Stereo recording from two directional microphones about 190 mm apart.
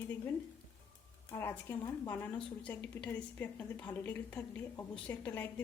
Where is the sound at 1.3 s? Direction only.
15° left (ahead or behind).